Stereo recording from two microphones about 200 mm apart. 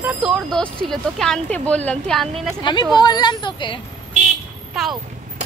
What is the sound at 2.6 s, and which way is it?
Speech, 25° left (ahead or behind).